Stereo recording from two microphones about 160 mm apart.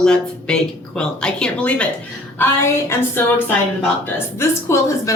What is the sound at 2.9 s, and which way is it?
Speech, 15° left (ahead or behind).